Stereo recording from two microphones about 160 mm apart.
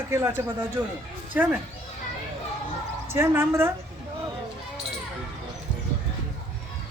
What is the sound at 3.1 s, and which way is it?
Speech, 15° right (ahead or behind).